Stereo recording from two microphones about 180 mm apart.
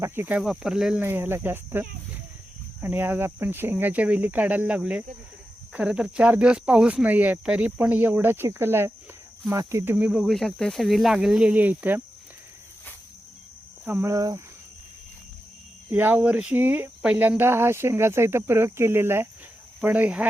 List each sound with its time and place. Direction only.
0.0 s speech: 10° right (ahead or behind)
13.8 s speech: 15° right (ahead or behind)
15.9 s speech: 10° right (ahead or behind)